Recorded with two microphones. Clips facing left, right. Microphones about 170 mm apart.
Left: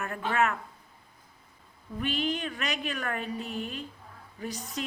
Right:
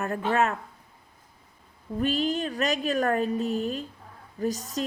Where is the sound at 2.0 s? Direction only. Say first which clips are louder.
Right 5 dB; 40° right (ahead or behind).